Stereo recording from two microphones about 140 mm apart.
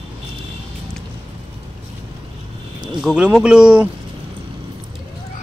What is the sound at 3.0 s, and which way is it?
Speech, 5° right (ahead or behind).